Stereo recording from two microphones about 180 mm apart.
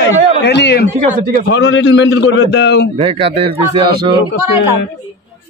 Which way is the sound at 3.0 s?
30° right (ahead or behind).